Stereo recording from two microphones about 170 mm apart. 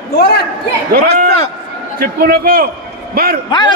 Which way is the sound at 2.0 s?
60° right (ahead or behind).